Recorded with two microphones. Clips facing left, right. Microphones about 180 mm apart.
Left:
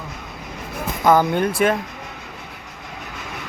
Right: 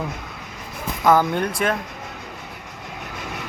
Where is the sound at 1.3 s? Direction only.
5° left (ahead or behind).